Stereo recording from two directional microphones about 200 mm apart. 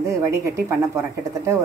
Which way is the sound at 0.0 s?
15° right (ahead or behind).